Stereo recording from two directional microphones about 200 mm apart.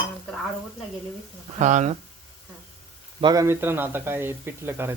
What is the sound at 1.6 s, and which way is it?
Speech, 35° right (ahead or behind).